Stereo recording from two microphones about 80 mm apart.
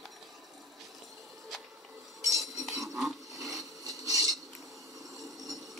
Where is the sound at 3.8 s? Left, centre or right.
Right.